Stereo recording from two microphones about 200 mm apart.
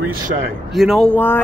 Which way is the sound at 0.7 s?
Centre (ahead or behind).